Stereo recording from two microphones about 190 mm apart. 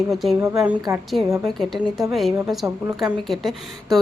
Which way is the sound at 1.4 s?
Centre (ahead or behind).